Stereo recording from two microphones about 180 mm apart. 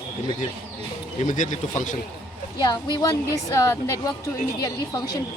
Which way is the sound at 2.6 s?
25° left (ahead or behind).